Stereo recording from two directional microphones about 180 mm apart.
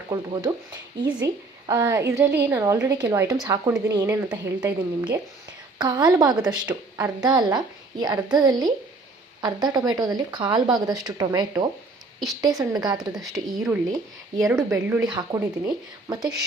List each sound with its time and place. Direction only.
0.1 s a woman's voice: 20° right (ahead or behind)
13.5 s speech: 5° right (ahead or behind)
14.3 s a woman's voice: 15° right (ahead or behind)